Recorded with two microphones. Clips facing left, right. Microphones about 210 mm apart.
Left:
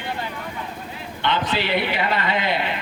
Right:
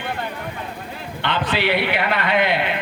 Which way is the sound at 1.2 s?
60° right (ahead or behind).